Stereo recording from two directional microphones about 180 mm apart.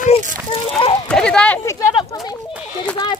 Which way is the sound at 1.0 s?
5° left (ahead or behind).